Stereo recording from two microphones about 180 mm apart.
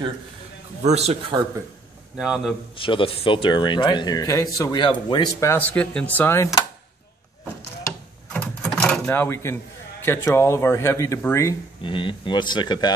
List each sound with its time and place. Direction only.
0.8 s speech: 35° right (ahead or behind)
1.3 s speech: 25° right (ahead or behind)
2.1 s a man's voice: 5° right (ahead or behind)
2.7 s speech: 30° left (ahead or behind)
8.3 s a sound: 5° left (ahead or behind)
10.0 s speech: 15° left (ahead or behind)
11.8 s speech: 30° left (ahead or behind)